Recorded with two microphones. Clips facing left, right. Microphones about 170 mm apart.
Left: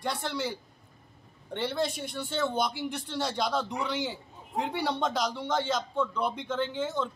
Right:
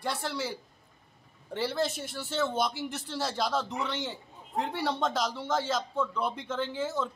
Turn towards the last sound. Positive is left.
turn(degrees=-5)  # may be behind; listen again after turning